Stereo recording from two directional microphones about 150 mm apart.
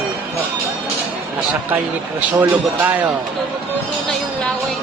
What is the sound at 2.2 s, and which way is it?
Speech, 10° right (ahead or behind).